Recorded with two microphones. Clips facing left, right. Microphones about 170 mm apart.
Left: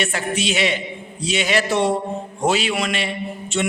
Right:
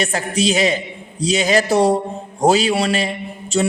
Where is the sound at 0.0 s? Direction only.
40° right (ahead or behind).